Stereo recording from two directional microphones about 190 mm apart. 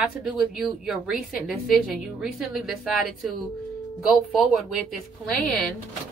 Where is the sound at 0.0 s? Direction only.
Centre (ahead or behind).